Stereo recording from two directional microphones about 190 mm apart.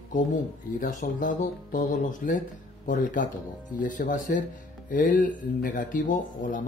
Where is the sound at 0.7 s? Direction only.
45° left (ahead or behind).